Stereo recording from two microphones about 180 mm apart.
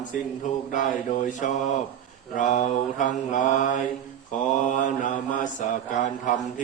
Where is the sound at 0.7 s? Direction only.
45° left (ahead or behind).